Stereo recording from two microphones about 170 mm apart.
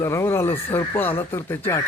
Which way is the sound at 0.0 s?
15° left (ahead or behind).